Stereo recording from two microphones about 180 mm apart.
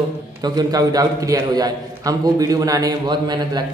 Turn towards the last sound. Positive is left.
turn(degrees=-25)  # may be behind; listen again after turning